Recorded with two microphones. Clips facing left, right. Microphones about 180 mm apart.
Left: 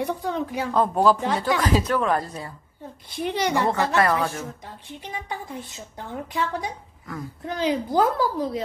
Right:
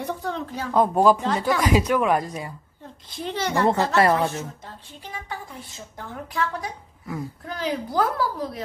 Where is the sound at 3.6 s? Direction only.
20° right (ahead or behind).